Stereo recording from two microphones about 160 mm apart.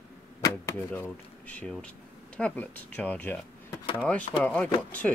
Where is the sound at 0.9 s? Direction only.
10° left (ahead or behind).